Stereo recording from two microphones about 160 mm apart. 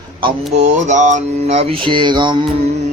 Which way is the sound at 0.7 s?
50° right (ahead or behind).